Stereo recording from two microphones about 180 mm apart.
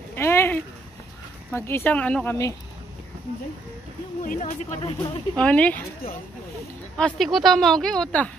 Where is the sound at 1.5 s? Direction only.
15° left (ahead or behind).